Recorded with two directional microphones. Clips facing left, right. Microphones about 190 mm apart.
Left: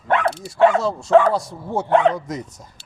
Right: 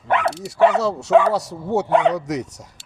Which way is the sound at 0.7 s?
75° right (ahead or behind).